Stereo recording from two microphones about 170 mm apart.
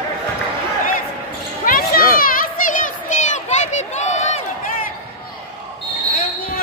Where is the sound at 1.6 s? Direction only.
55° left (ahead or behind).